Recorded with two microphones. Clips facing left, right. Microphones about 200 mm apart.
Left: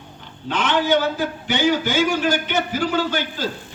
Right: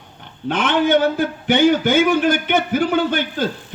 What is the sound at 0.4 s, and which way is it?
A man's voice, 55° right (ahead or behind).